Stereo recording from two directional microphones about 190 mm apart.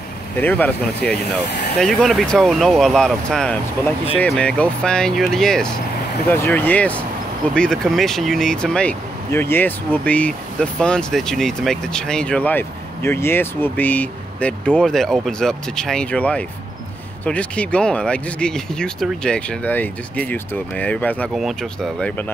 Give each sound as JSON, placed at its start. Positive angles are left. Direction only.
{"t": 0.4, "sound": "speech", "side_deg": 10}